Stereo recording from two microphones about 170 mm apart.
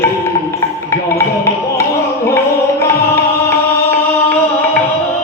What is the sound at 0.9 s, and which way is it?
Music, 15° left (ahead or behind).